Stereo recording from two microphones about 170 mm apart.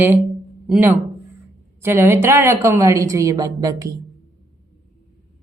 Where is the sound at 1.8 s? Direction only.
15° right (ahead or behind).